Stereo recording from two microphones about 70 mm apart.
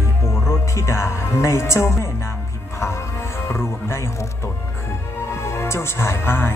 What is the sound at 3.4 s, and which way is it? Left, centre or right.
Speech, left.